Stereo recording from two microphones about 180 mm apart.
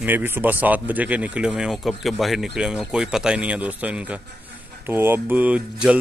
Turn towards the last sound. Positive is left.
turn(degrees=-5)  # may be behind; listen again after turning